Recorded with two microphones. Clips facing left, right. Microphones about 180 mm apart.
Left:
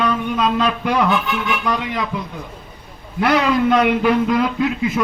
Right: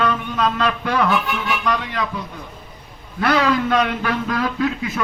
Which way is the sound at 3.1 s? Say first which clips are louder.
Left 2 dB; 15° left (ahead or behind).